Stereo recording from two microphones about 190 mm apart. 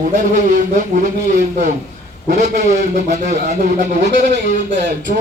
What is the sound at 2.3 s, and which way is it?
Speech, 40° right (ahead or behind).